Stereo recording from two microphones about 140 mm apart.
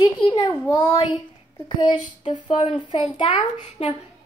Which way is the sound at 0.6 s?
30° left (ahead or behind).